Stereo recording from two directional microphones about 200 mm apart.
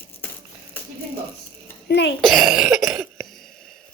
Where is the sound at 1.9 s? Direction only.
55° left (ahead or behind).